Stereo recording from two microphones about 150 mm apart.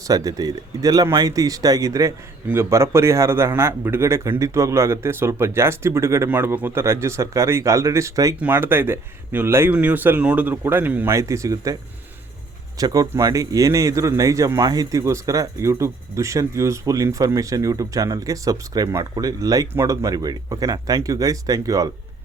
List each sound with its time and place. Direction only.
0.1 s a man's voice: 25° right (ahead or behind)
12.8 s a man's voice: 25° right (ahead or behind)